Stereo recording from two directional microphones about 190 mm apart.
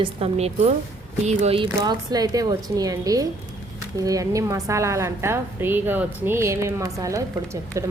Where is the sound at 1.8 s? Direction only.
20° right (ahead or behind).